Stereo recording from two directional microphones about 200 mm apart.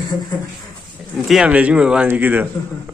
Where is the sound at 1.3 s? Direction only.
5° right (ahead or behind).